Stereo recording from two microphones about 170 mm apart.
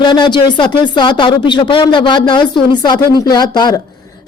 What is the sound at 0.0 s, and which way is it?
Speech, 25° left (ahead or behind).